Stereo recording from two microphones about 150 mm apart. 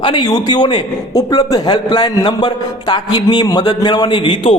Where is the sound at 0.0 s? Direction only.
30° left (ahead or behind).